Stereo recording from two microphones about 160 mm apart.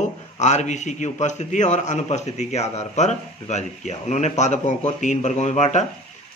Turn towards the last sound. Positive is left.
turn(degrees=45)  # may be behind; listen again after turning